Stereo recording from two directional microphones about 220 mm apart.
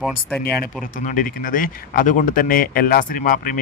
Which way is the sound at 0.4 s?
40° left (ahead or behind).